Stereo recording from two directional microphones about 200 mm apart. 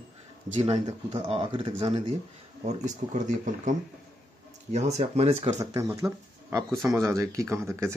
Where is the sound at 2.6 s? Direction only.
35° right (ahead or behind).